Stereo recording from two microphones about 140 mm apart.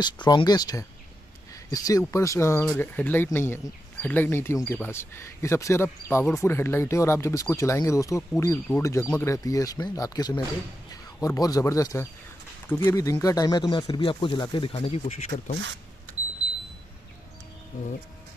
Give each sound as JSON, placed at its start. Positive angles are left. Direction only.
{"t": 0.0, "sound": "speech", "side_deg": 30}